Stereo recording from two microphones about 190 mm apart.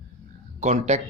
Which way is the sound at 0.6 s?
35° right (ahead or behind).